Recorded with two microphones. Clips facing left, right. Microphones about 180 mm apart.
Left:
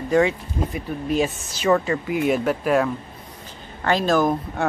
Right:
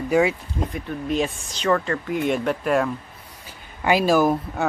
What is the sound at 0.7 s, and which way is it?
Speech, 5° left (ahead or behind).